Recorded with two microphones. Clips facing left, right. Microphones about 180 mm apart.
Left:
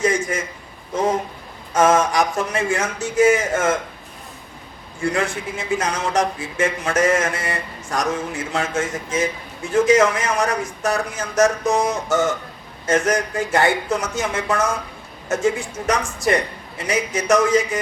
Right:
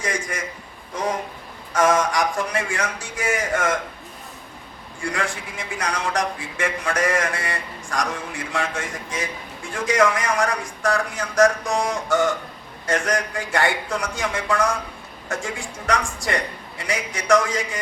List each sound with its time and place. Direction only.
0.0 s a sound: 25° left (ahead or behind)
1.7 s a man's voice: 25° left (ahead or behind)
4.9 s a man's voice: 25° left (ahead or behind)